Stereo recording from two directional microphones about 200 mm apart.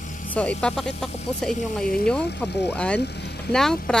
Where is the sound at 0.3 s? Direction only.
5° left (ahead or behind).